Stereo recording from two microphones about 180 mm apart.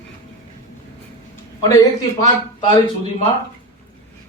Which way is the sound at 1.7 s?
20° left (ahead or behind).